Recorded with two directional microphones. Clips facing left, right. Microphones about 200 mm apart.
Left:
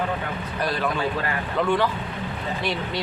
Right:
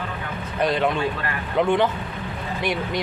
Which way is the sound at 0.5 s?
20° right (ahead or behind).